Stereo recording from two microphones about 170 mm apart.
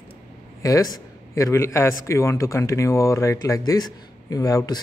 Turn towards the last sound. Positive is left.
turn(degrees=20)  # may be behind; listen again after turning